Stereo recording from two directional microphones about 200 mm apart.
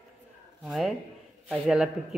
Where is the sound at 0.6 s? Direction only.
Centre (ahead or behind).